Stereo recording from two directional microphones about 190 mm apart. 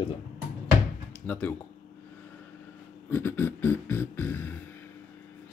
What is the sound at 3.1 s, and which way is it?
Speech, 10° left (ahead or behind).